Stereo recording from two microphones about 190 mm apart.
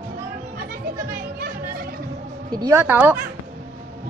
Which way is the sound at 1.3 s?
50° right (ahead or behind).